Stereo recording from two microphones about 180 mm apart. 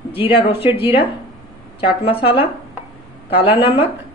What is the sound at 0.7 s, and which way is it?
Speech, 30° left (ahead or behind).